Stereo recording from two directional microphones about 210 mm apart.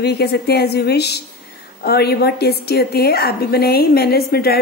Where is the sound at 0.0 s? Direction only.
50° left (ahead or behind).